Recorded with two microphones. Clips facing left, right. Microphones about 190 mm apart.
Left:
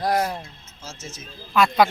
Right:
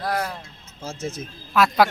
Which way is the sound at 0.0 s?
20° left (ahead or behind).